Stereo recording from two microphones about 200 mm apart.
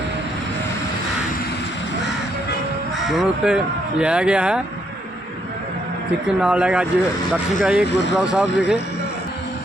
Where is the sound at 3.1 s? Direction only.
5° right (ahead or behind).